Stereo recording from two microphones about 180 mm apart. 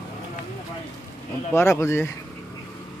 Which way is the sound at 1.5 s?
15° left (ahead or behind).